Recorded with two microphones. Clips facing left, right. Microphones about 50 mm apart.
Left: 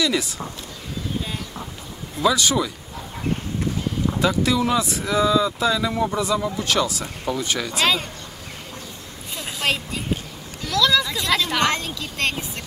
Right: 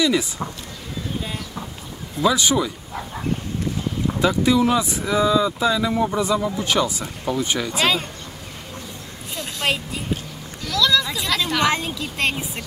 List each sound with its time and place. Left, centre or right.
0.0 s speech: centre
2.2 s speech: centre
4.2 s speech: centre
6.1 s speech: centre
9.4 s a sound: centre
11.3 s a woman's voice: centre
11.6 s speech: centre